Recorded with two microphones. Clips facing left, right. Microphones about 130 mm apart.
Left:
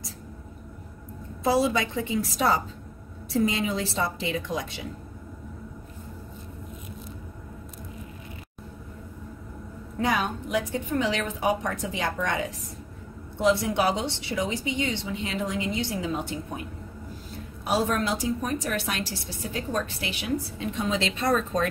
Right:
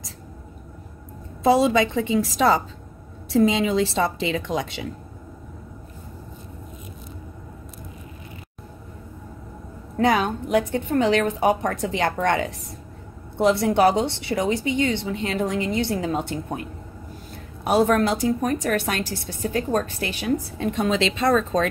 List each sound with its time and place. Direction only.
1.4 s a woman's voice: 90° right
9.9 s a woman's voice: 65° right (ahead or behind)
13.4 s a woman's voice: 60° right (ahead or behind)
17.6 s a woman's voice: 55° right (ahead or behind); by 21.6 s 90° right